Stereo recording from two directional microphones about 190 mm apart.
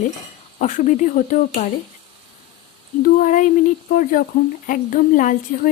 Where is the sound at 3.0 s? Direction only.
45° left (ahead or behind).